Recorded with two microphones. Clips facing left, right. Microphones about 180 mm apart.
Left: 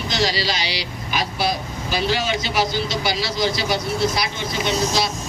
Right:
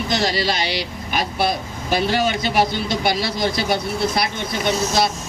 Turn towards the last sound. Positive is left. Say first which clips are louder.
# right 2 dB
turn(degrees=-55)  # may be behind; listen again after turning